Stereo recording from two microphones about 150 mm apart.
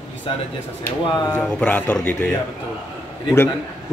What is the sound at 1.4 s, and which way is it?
Speech, 10° left (ahead or behind).